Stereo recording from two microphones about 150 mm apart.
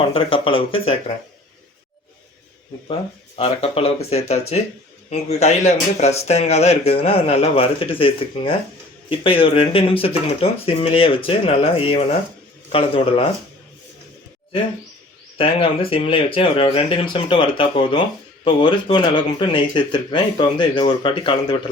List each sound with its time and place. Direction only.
0.1 s speech: 35° left (ahead or behind)
3.3 s speech: 40° left (ahead or behind)
15.4 s speech: 40° left (ahead or behind)